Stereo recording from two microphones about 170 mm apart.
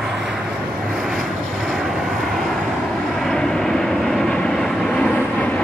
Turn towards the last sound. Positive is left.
turn(degrees=10)  # may be behind; listen again after turning